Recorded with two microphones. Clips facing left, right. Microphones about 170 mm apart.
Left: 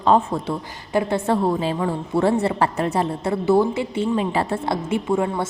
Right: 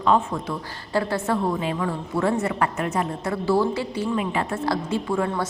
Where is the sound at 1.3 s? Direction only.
30° left (ahead or behind).